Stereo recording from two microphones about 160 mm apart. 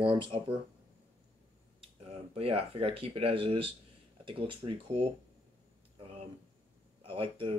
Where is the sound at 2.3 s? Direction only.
35° right (ahead or behind).